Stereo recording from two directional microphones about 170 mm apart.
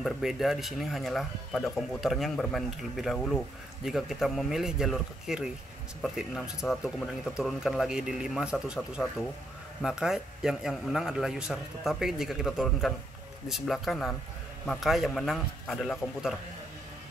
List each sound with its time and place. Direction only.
0.0 s speech: centre (ahead or behind)